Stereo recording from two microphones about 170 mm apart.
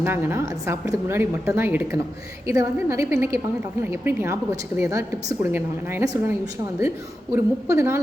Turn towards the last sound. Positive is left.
turn(degrees=-15)  # may be behind; listen again after turning